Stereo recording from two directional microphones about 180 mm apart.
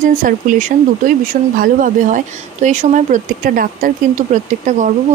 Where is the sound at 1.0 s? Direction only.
45° right (ahead or behind).